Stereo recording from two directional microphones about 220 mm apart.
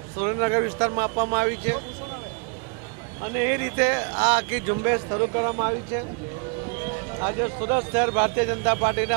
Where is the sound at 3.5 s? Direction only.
15° right (ahead or behind).